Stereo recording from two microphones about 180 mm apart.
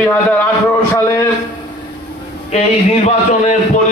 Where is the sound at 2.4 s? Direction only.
40° left (ahead or behind).